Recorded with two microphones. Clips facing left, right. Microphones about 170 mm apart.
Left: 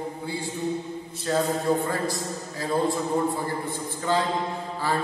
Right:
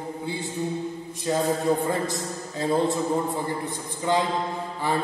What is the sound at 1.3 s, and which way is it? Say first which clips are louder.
Mantra: even; 15° right (ahead or behind).